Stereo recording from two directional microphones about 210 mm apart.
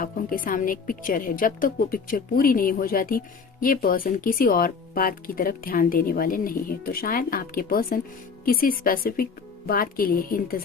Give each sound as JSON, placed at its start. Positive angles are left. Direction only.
{"t": 0.0, "sound": "a woman's voice", "side_deg": 40}